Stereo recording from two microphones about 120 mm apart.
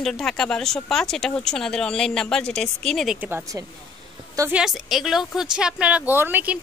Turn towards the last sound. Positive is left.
turn(degrees=-15)  # may be behind; listen again after turning